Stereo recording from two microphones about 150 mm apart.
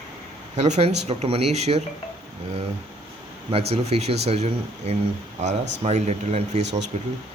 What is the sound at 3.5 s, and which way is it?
Speech, 45° right (ahead or behind).